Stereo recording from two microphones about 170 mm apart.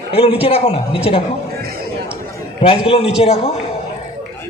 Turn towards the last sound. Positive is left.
turn(degrees=35)  # may be behind; listen again after turning